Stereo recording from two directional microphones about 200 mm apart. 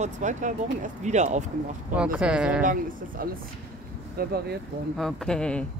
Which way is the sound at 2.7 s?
45° right (ahead or behind).